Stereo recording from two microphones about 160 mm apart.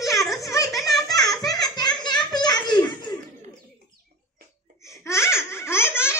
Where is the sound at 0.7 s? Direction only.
25° left (ahead or behind).